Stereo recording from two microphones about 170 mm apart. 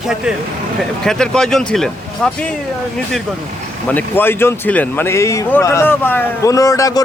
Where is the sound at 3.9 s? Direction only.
10° left (ahead or behind).